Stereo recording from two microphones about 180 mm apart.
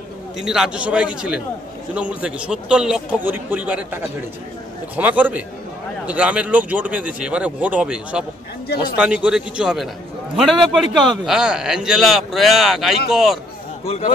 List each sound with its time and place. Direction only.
0.4 s a man's voice: 5° right (ahead or behind)
13.8 s a man's voice: 35° left (ahead or behind)